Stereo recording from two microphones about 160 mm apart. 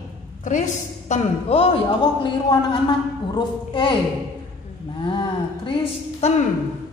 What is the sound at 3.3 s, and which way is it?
Speech, 30° left (ahead or behind).